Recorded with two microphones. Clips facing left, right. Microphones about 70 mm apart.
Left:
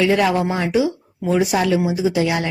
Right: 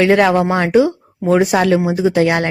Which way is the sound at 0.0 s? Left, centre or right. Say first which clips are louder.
Right 5 dB; right.